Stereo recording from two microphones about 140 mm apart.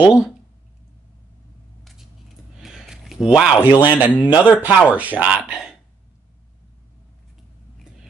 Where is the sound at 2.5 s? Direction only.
5° right (ahead or behind).